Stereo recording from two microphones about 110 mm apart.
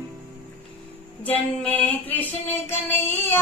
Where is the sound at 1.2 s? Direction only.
15° left (ahead or behind).